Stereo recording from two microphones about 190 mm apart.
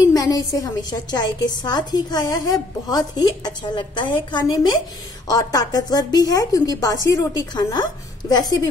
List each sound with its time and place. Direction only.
0.1 s a woman's voice: 20° left (ahead or behind)